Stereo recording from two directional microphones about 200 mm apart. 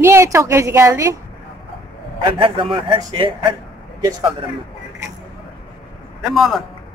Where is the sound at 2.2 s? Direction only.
25° right (ahead or behind).